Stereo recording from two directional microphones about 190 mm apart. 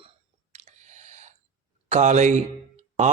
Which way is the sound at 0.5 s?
35° right (ahead or behind).